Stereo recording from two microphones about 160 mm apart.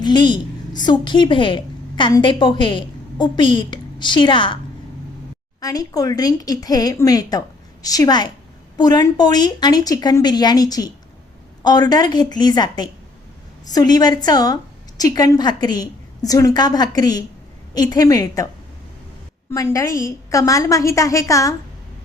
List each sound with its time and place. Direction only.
0.0 s a woman's voice: 30° left (ahead or behind)
5.5 s a woman's voice: 20° left (ahead or behind)
19.5 s a woman's voice: 15° left (ahead or behind)